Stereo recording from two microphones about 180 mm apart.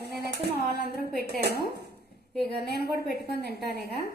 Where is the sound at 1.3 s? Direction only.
60° right (ahead or behind).